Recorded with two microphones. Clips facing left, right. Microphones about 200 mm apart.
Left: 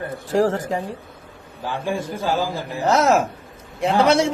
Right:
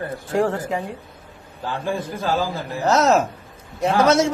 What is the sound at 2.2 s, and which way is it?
Speech, 15° left (ahead or behind).